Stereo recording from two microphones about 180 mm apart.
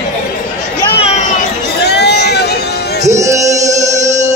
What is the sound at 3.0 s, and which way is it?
Music, 15° right (ahead or behind).